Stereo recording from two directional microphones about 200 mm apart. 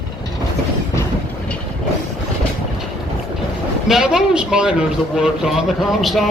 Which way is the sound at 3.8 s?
5° right (ahead or behind).